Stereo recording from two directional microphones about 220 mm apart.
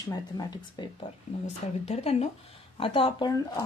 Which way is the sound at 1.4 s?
30° left (ahead or behind).